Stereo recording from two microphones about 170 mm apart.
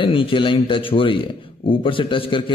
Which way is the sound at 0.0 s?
30° left (ahead or behind).